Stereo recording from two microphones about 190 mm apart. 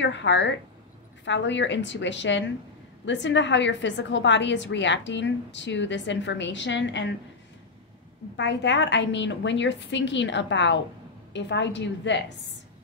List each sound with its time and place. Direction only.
0.0 s a woman's voice: 70° left (ahead or behind)
8.4 s a woman's voice: 70° left (ahead or behind)